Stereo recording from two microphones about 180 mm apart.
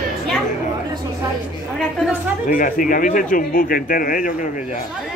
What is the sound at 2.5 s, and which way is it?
Speech, 50° left (ahead or behind).